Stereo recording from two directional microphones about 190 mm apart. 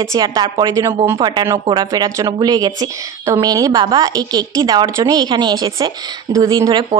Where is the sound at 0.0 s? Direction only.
15° right (ahead or behind).